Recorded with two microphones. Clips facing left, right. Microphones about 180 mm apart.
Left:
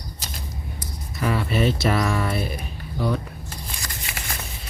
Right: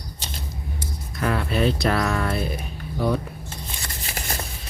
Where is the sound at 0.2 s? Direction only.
30° right (ahead or behind).